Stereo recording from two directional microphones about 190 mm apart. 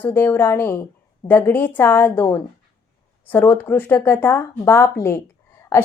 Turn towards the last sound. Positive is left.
turn(degrees=15)  # may be behind; listen again after turning